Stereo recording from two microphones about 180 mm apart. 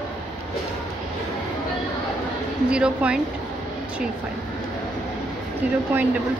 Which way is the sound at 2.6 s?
5° right (ahead or behind).